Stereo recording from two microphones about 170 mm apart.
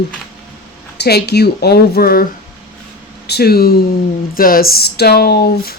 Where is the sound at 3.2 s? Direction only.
70° left (ahead or behind).